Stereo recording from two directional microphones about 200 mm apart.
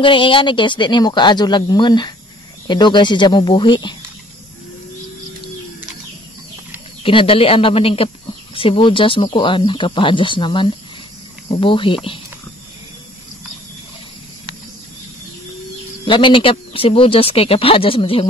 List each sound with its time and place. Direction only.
0.0 s speech: 25° left (ahead or behind)
7.0 s speech: 25° left (ahead or behind)
16.1 s speech: 25° left (ahead or behind)